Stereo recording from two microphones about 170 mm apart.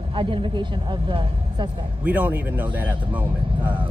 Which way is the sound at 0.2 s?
30° right (ahead or behind).